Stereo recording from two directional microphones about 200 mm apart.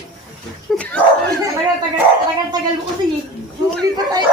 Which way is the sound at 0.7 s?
Centre (ahead or behind).